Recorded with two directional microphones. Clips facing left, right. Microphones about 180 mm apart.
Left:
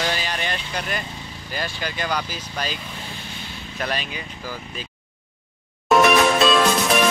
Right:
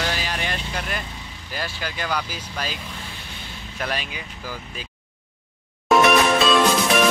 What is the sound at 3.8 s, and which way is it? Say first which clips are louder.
Speech: left 1 dB; 10° right (ahead or behind).